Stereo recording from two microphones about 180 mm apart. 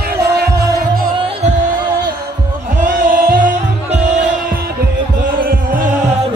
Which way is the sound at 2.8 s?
50° right (ahead or behind).